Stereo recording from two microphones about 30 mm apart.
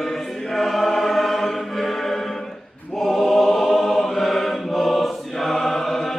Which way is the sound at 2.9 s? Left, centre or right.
Centre.